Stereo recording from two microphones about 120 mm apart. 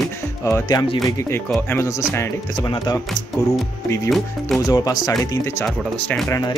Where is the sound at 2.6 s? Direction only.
35° left (ahead or behind).